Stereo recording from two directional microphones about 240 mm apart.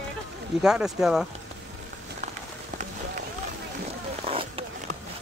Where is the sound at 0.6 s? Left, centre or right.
Centre.